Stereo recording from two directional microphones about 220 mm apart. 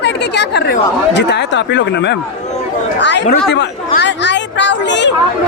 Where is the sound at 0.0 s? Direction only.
50° left (ahead or behind).